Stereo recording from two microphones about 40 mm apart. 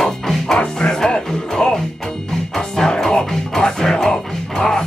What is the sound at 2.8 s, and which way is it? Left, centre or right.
Music, centre.